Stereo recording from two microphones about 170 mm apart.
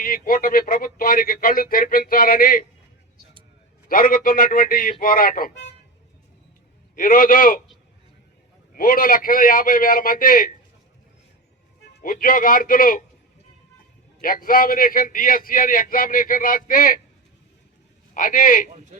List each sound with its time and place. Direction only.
0.0 s a man's voice: 55° left (ahead or behind)
3.8 s a man's voice: 55° left (ahead or behind)
6.9 s a man's voice: 55° left (ahead or behind)
8.7 s a man's voice: 55° left (ahead or behind)
11.9 s a man's voice: 55° left (ahead or behind)
14.2 s a man's voice: 55° left (ahead or behind)
18.1 s speech: 55° left (ahead or behind)